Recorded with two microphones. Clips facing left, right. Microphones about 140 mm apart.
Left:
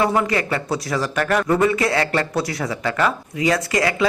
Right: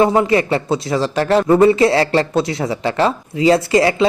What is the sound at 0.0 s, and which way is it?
Speech, 25° right (ahead or behind).